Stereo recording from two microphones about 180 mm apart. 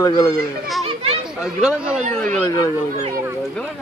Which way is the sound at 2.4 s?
20° left (ahead or behind).